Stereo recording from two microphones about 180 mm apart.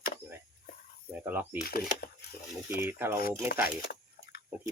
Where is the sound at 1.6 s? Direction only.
55° left (ahead or behind).